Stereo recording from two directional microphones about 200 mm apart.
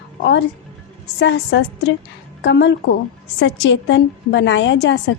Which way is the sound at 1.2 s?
60° left (ahead or behind).